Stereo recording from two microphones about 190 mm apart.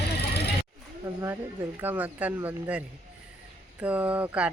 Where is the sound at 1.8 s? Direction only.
10° right (ahead or behind).